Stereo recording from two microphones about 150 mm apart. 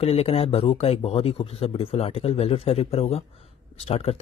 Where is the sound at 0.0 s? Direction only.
40° left (ahead or behind).